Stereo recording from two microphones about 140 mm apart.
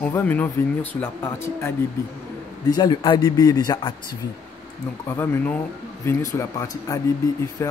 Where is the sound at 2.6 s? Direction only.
30° left (ahead or behind).